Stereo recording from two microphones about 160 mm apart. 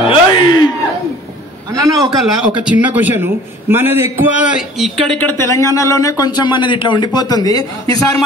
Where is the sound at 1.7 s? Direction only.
20° right (ahead or behind).